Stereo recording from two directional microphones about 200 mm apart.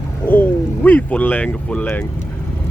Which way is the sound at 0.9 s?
10° left (ahead or behind).